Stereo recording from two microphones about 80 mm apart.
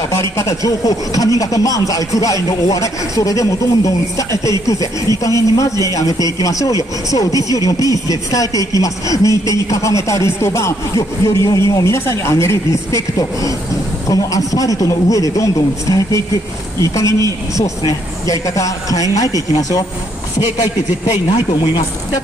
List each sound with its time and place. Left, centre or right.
0.2 s speech: left
21.3 s speech: left